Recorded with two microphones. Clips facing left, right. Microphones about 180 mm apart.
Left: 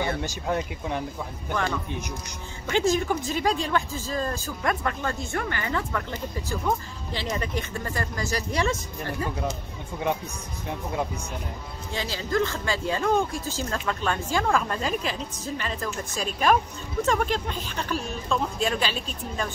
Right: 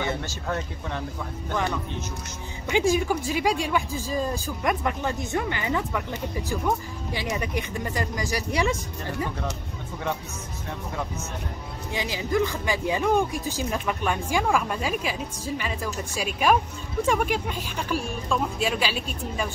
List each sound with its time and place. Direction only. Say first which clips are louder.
0.2 s speech: left 3 dB; 15° left (ahead or behind)
1.5 s speech: even; 15° right (ahead or behind)
11.9 s speech: right 1 dB; 15° right (ahead or behind)